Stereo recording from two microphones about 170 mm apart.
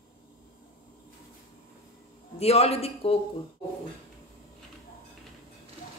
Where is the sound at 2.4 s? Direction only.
35° left (ahead or behind).